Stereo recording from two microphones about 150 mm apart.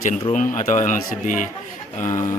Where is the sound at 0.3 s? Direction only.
60° left (ahead or behind).